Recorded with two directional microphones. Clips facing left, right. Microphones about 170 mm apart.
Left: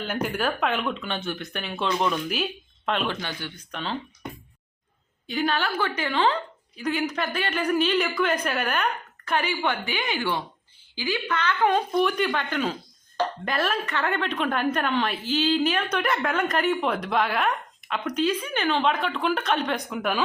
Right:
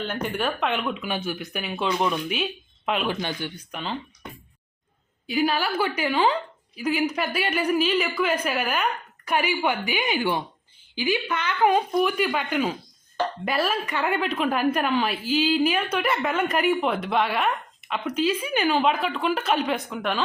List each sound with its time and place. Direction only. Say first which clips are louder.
0.0 s speech: even; 5° left (ahead or behind)
3.2 s speech: right 4 dB; 15° right (ahead or behind)
5.2 s speech: right 2 dB; 10° right (ahead or behind)